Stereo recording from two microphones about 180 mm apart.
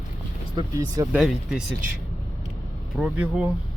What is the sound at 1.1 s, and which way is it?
Speech, 5° right (ahead or behind).